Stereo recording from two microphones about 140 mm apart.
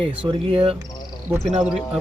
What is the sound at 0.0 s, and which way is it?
Speech, 40° right (ahead or behind).